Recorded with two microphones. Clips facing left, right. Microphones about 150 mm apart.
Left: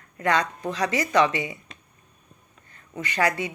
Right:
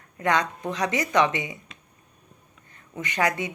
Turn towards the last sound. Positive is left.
turn(degrees=-20)  # may be behind; listen again after turning